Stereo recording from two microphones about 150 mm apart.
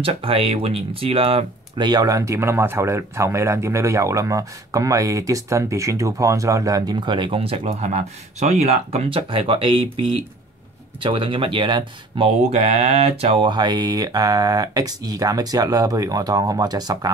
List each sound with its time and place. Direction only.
0.0 s speech: 40° right (ahead or behind)
1.9 s speech: 25° right (ahead or behind)
12.4 s speech: 50° right (ahead or behind); by 17.1 s 25° right (ahead or behind)